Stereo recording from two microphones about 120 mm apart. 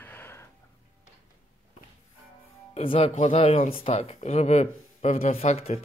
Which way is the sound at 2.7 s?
60° left (ahead or behind).